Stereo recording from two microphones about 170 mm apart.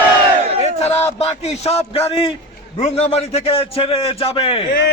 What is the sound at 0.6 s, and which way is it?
A man's voice, 40° left (ahead or behind).